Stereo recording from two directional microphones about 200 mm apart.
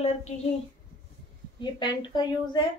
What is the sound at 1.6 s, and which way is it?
A woman's voice, 20° left (ahead or behind).